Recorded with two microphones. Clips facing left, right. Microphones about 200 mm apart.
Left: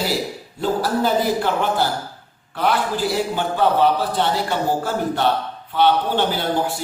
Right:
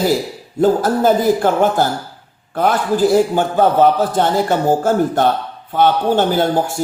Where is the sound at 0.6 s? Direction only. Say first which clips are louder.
Right 7 dB; 45° right (ahead or behind).